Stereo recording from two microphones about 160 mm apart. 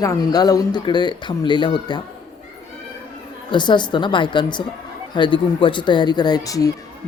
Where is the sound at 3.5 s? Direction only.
30° left (ahead or behind).